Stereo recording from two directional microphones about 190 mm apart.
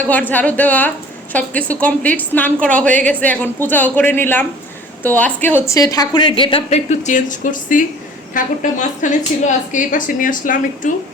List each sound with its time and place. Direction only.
0.0 s a woman's voice: 10° left (ahead or behind); by 10.9 s 45° left (ahead or behind)